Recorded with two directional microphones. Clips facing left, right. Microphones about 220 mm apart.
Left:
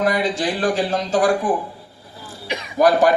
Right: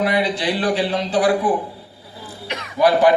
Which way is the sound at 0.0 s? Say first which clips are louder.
Even; 45° left (ahead or behind).